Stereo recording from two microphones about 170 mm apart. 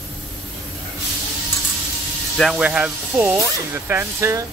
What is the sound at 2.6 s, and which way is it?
Speech, 10° right (ahead or behind).